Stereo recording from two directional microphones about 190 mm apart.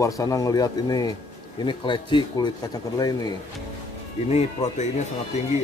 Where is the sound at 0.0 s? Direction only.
20° left (ahead or behind).